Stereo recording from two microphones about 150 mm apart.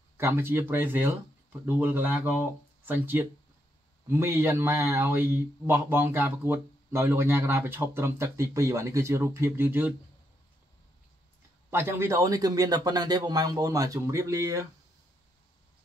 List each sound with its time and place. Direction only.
0.2 s speech: 15° right (ahead or behind)
11.7 s a man's voice: 15° right (ahead or behind)